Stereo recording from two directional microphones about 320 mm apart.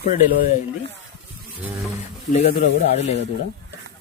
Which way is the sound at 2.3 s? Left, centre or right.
Left.